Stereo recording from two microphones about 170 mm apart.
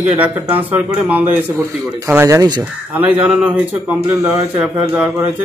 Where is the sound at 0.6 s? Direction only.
10° right (ahead or behind).